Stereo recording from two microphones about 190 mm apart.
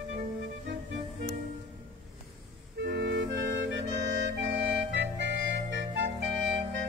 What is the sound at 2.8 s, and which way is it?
Clarinet, 60° right (ahead or behind).